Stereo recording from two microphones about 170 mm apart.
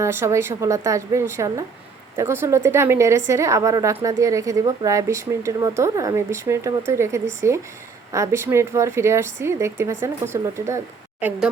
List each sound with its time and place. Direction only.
0.0 s a woman's voice: 15° right (ahead or behind)